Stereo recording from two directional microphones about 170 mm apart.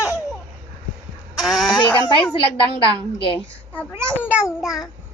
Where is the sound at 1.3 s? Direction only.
Centre (ahead or behind).